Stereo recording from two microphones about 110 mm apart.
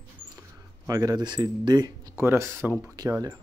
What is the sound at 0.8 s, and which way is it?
Speech, 35° right (ahead or behind).